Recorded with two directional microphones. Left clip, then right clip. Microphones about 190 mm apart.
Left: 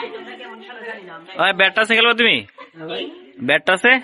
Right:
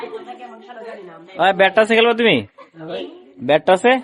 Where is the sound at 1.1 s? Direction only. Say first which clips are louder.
Right 2 dB; 20° right (ahead or behind).